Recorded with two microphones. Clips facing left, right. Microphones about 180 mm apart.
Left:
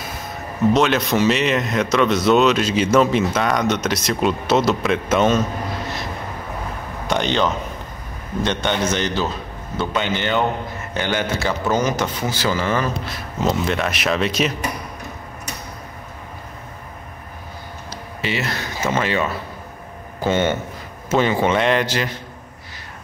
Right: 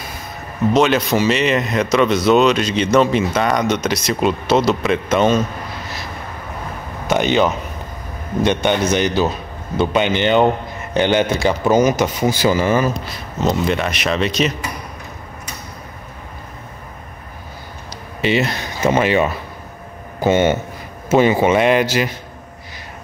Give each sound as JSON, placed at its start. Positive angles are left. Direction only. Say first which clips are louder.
{"t": 0.7, "sound": "speech", "louder": "right 5 dB", "side_deg": 0}
{"t": 7.1, "sound": "speech", "louder": "right 4 dB", "side_deg": -10}
{"t": 18.2, "sound": "speech", "louder": "right 7 dB", "side_deg": -20}